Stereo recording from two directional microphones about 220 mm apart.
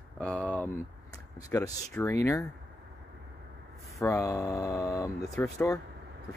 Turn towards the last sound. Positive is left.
turn(degrees=15)  # may be behind; listen again after turning